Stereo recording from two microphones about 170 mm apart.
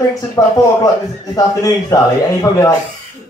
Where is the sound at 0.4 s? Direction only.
20° left (ahead or behind).